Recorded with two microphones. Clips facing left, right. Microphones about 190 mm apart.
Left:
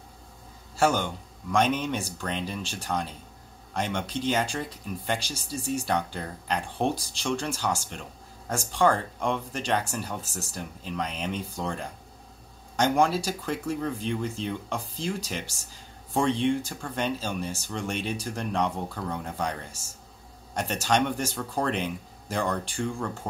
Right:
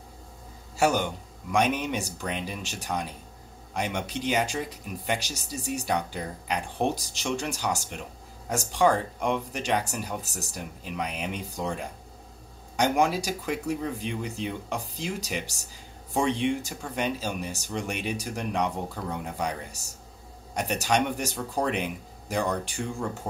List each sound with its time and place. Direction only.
0.7 s speech: 15° right (ahead or behind)